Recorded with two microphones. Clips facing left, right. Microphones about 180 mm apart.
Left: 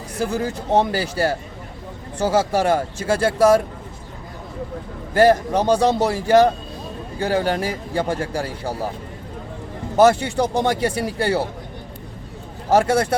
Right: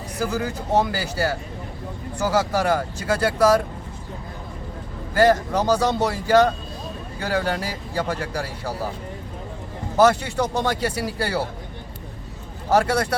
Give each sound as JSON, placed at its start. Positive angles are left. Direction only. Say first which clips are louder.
{"t": 0.2, "sound": "a man's voice", "louder": "left 2 dB", "side_deg": 25}
{"t": 5.2, "sound": "a man's voice", "louder": "left 3 dB", "side_deg": 25}
{"t": 10.0, "sound": "a man's voice", "louder": "left 3 dB", "side_deg": 25}
{"t": 12.7, "sound": "a man's voice", "louder": "left 3 dB", "side_deg": 25}